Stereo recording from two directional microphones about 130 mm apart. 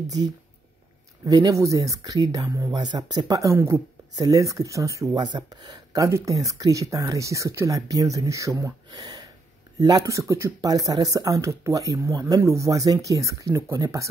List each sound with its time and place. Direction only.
1.2 s speech: 25° right (ahead or behind)